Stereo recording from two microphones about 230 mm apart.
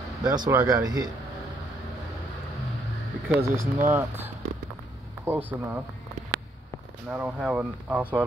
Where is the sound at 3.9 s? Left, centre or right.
Centre.